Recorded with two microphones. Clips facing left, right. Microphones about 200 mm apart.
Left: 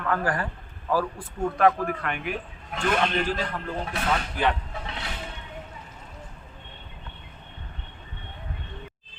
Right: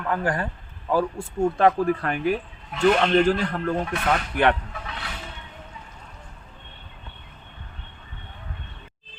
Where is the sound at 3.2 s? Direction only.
50° right (ahead or behind).